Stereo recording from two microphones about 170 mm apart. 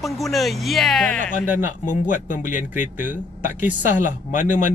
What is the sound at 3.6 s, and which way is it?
Speech, 10° right (ahead or behind).